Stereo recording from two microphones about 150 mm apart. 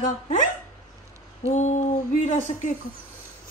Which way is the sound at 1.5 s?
55° left (ahead or behind).